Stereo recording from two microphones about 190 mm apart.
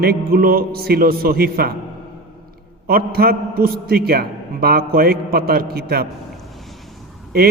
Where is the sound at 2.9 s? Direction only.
55° right (ahead or behind).